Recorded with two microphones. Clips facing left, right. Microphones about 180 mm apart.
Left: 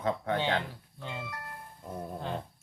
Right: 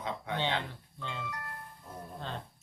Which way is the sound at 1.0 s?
10° left (ahead or behind).